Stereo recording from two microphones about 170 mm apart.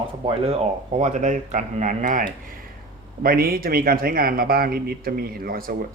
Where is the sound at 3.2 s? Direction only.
60° right (ahead or behind).